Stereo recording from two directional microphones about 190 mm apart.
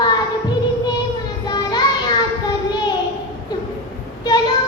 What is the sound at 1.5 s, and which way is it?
Child singing, 20° left (ahead or behind).